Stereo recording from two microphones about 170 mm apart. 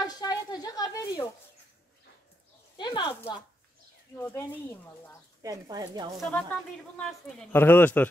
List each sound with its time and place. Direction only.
0.0 s a sound: 20° left (ahead or behind)
2.8 s speech: 30° left (ahead or behind)
4.2 s speech: 15° left (ahead or behind)
5.4 s speech: 20° right (ahead or behind)
6.1 s speech: 5° left (ahead or behind)